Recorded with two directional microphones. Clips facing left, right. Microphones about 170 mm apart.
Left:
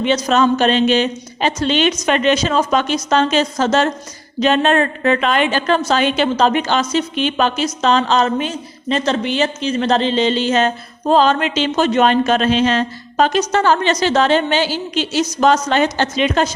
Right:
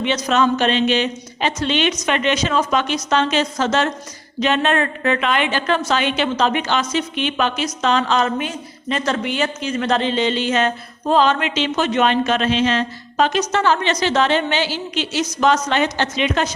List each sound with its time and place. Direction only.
0.0 s a woman's voice: 40° left (ahead or behind)